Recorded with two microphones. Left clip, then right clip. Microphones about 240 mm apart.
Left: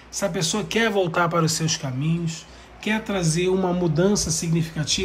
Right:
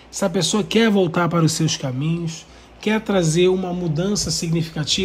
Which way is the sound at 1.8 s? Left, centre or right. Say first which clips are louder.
Right 3 dB; centre.